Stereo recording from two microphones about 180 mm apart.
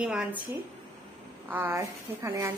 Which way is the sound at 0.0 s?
5° right (ahead or behind).